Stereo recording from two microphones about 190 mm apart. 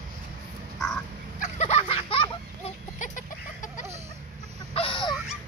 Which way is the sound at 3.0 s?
40° left (ahead or behind).